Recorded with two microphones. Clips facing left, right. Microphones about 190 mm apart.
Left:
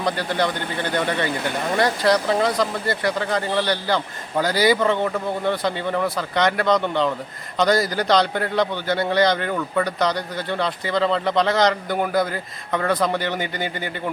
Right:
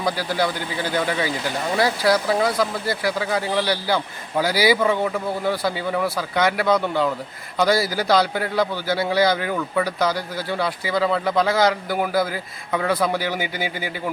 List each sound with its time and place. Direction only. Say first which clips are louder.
0.0 s a man's voice: even; 5° right (ahead or behind)